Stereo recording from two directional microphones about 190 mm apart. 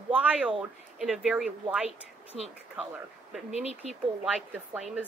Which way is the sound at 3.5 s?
35° left (ahead or behind).